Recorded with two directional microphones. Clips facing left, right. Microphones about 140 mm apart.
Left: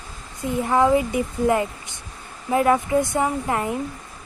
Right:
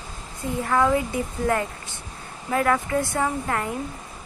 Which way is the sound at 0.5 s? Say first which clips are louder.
Left 3 dB; 20° left (ahead or behind).